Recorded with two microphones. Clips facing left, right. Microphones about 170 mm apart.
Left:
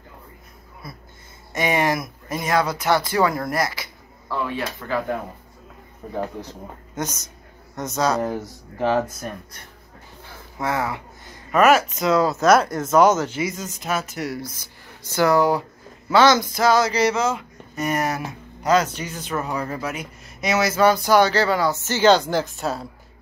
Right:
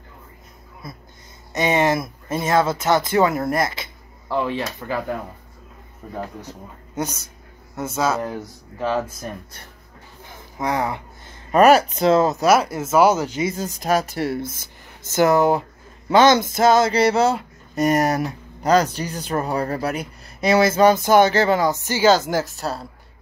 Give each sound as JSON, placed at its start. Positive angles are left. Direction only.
{"t": 1.5, "sound": "speech", "side_deg": -20}
{"t": 7.0, "sound": "speech", "side_deg": -10}
{"t": 10.2, "sound": "a sound", "side_deg": -15}
{"t": 11.5, "sound": "speech", "side_deg": -35}
{"t": 12.4, "sound": "speech", "side_deg": -5}
{"t": 13.4, "sound": "speech", "side_deg": -30}